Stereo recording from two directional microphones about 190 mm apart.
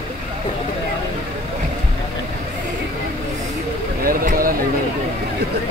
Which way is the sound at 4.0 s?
50° right (ahead or behind).